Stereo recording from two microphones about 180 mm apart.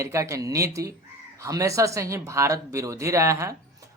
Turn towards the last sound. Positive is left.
turn(degrees=-15)  # may be behind; listen again after turning